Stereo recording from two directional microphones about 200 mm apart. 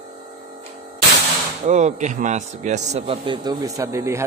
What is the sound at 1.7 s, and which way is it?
A man's voice, 35° right (ahead or behind).